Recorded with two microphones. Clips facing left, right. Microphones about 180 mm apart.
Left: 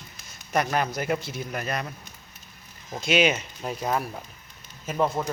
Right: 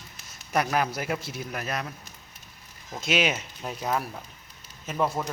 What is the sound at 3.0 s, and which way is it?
A man's voice, centre (ahead or behind).